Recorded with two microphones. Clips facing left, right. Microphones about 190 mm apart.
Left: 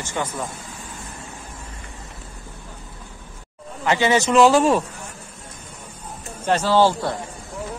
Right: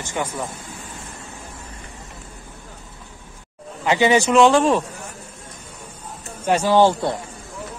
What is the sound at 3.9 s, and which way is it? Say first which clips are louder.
Speech: right 2 dB; 15° right (ahead or behind).